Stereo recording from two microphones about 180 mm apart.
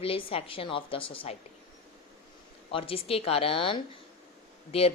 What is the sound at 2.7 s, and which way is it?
A woman's voice, 30° left (ahead or behind).